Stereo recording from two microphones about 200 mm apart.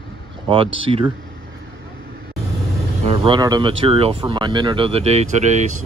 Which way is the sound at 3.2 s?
20° right (ahead or behind).